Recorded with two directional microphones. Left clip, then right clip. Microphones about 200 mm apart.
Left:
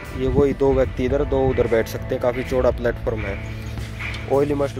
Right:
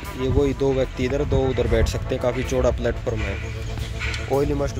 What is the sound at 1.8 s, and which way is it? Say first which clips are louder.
Speech: left 2 dB; 25° right (ahead or behind).